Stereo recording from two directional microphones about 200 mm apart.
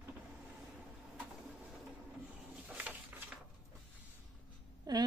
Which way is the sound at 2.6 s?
5° right (ahead or behind).